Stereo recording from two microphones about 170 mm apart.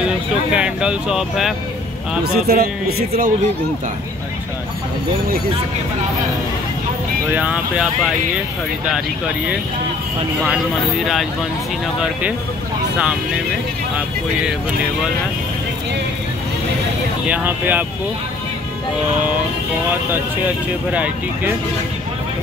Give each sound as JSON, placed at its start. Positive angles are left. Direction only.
{"t": 0.5, "sound": "speech", "side_deg": -5}
{"t": 2.2, "sound": "speech", "side_deg": -65}
{"t": 7.3, "sound": "speech", "side_deg": -5}
{"t": 12.0, "sound": "speech", "side_deg": -5}
{"t": 17.3, "sound": "speech", "side_deg": -10}
{"t": 20.9, "sound": "speech", "side_deg": -10}